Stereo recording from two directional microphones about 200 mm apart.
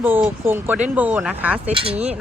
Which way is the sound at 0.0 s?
10° right (ahead or behind).